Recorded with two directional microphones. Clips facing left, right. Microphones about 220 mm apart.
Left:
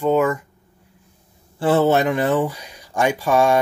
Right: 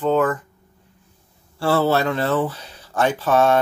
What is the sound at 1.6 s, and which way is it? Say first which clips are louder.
Speech: left 2 dB; 20° left (ahead or behind).